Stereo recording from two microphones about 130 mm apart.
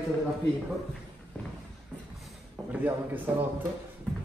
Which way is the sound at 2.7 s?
15° right (ahead or behind).